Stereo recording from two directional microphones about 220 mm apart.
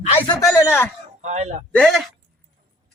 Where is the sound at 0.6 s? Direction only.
10° left (ahead or behind).